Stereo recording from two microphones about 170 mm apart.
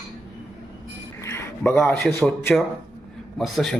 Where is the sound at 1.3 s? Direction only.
10° left (ahead or behind).